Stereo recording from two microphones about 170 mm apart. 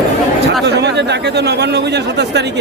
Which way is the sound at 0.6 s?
85° right.